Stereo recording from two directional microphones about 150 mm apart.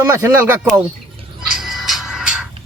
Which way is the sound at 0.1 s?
15° right (ahead or behind).